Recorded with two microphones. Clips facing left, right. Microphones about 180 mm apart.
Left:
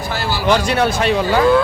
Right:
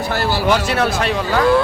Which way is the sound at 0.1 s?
60° right (ahead or behind).